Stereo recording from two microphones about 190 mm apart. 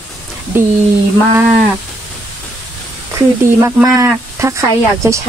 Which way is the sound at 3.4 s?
45° right (ahead or behind).